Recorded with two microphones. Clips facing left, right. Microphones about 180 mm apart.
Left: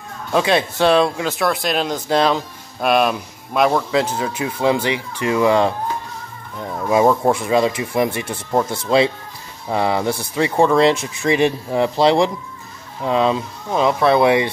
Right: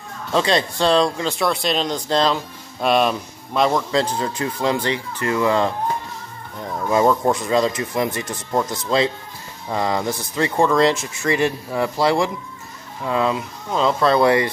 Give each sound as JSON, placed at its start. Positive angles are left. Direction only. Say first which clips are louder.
{"t": 0.3, "sound": "speech", "louder": "left 2 dB", "side_deg": 10}
{"t": 6.9, "sound": "speech", "louder": "left 2 dB", "side_deg": 15}